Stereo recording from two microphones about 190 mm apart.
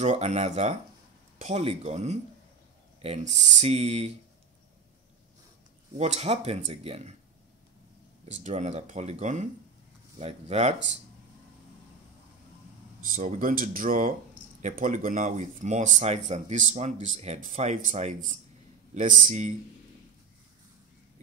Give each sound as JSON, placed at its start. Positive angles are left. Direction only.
{"t": 0.0, "sound": "speech", "side_deg": -35}
{"t": 5.9, "sound": "speech", "side_deg": -35}
{"t": 8.3, "sound": "speech", "side_deg": -35}
{"t": 13.0, "sound": "speech", "side_deg": -45}